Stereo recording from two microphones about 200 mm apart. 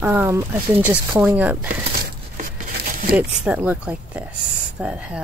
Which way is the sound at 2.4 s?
45° right (ahead or behind).